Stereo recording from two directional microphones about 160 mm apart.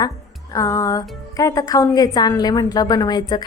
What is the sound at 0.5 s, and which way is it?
A woman's voice, 20° left (ahead or behind).